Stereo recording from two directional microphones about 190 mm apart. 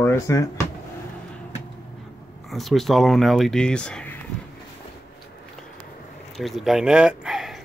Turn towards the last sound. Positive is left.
turn(degrees=0)  # may be behind; listen again after turning